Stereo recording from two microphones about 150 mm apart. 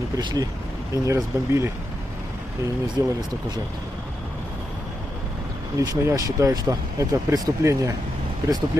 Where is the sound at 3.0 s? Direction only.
25° right (ahead or behind).